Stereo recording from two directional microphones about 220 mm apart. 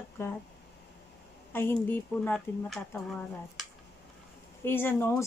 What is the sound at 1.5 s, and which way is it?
A woman's voice, 10° left (ahead or behind).